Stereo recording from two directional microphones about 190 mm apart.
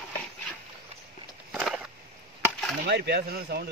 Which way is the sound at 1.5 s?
5° right (ahead or behind).